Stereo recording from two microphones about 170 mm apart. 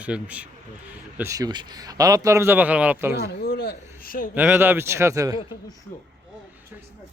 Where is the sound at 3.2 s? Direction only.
65° left (ahead or behind).